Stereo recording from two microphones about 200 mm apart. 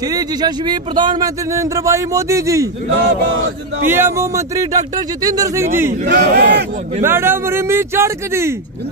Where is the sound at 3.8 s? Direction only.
10° right (ahead or behind).